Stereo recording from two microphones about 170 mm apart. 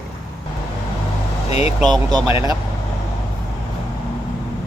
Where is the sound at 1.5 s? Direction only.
40° left (ahead or behind).